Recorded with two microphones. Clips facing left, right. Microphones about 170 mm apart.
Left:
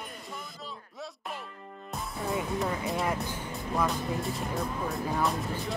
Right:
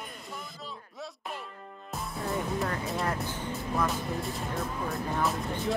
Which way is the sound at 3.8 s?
Centre (ahead or behind).